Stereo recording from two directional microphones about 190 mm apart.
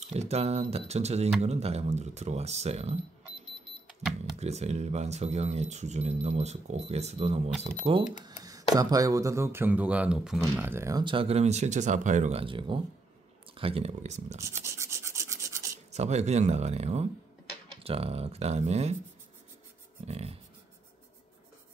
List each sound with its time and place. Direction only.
0.0 s speech: 35° right (ahead or behind)
4.4 s speech: 35° right (ahead or behind)
8.2 s cash register: 20° right (ahead or behind)
8.7 s speech: 20° right (ahead or behind); by 10.4 s 5° right (ahead or behind)
10.4 s speech: 15° right (ahead or behind); by 14.4 s 35° right (ahead or behind)
14.4 s rub: 15° right (ahead or behind)
15.9 s speech: 35° right (ahead or behind)
20.1 s speech: 35° right (ahead or behind)